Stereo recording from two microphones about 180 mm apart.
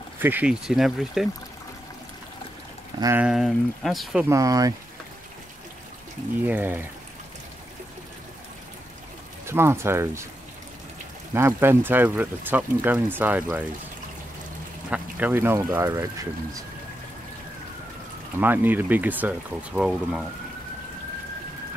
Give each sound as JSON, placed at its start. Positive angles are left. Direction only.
{"t": 0.2, "sound": "speech", "side_deg": -10}
{"t": 3.0, "sound": "speech", "side_deg": -15}
{"t": 3.3, "sound": "speech", "side_deg": 0}
{"t": 4.3, "sound": "speech", "side_deg": -20}
{"t": 6.4, "sound": "speech", "side_deg": -10}
{"t": 9.5, "sound": "speech", "side_deg": -15}
{"t": 11.3, "sound": "speech", "side_deg": -15}
{"t": 14.9, "sound": "speech", "side_deg": -10}
{"t": 18.4, "sound": "speech", "side_deg": -10}